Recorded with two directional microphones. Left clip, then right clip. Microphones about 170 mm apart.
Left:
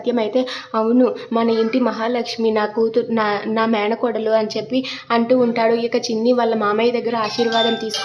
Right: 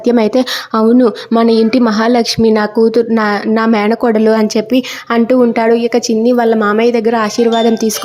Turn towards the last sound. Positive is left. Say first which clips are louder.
# right 7 dB
turn(degrees=-35)  # may be behind; listen again after turning